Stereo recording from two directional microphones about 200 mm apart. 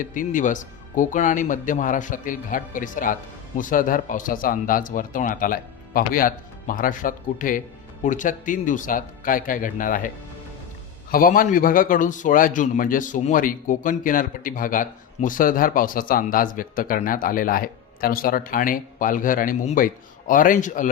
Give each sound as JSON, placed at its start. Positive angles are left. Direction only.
{"t": 0.0, "sound": "a man's voice", "side_deg": 40}
{"t": 11.1, "sound": "a man's voice", "side_deg": 45}